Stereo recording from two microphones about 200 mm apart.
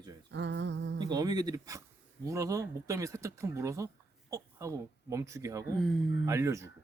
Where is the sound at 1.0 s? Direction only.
20° right (ahead or behind).